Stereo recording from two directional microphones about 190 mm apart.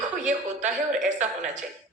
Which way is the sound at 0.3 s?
40° right (ahead or behind).